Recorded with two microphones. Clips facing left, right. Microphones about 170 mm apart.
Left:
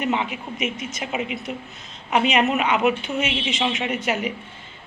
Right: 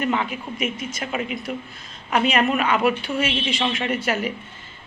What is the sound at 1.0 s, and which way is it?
Speech, 5° left (ahead or behind).